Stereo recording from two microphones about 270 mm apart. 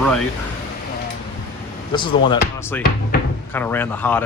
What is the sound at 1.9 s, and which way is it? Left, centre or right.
Speech, centre.